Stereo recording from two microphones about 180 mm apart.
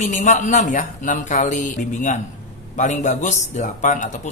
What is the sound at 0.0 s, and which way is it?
Speech, 40° left (ahead or behind).